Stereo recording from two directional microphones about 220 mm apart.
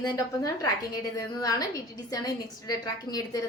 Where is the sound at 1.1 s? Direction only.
15° left (ahead or behind).